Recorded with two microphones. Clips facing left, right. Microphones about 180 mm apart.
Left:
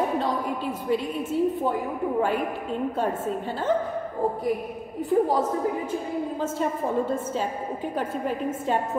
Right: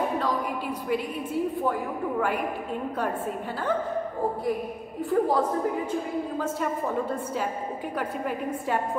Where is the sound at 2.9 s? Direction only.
25° left (ahead or behind).